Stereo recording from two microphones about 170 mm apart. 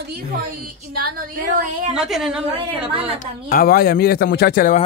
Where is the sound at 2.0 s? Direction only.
Centre (ahead or behind).